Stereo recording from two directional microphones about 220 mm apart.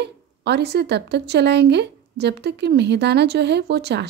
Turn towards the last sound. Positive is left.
turn(degrees=-50)  # may be behind; listen again after turning